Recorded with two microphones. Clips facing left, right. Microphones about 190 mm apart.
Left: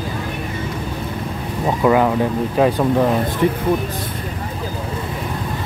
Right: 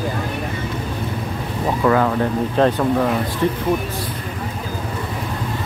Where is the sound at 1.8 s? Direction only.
15° left (ahead or behind).